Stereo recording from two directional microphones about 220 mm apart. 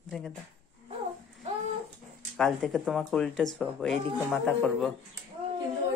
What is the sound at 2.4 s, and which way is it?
Speech, centre (ahead or behind).